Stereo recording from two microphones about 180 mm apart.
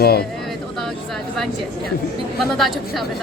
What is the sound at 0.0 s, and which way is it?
Speech, 60° left (ahead or behind).